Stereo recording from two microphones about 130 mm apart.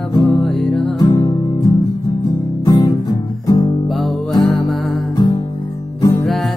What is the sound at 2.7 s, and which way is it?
Music, 30° left (ahead or behind).